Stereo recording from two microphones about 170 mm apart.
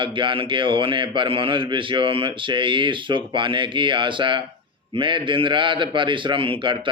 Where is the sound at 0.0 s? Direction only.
30° right (ahead or behind).